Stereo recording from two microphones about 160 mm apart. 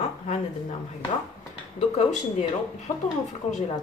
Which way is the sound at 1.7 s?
45° left (ahead or behind).